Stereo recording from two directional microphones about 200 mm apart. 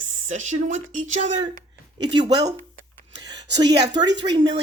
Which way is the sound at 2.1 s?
20° right (ahead or behind).